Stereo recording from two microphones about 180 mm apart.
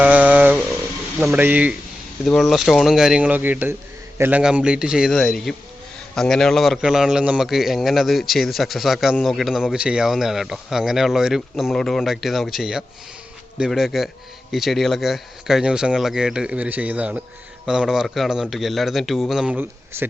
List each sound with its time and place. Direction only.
0.0 s a sound: 10° right (ahead or behind)
1.2 s speech: 5° right (ahead or behind)
2.2 s speech: centre (ahead or behind)